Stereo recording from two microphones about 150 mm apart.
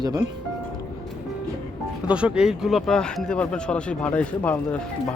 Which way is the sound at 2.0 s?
5° right (ahead or behind).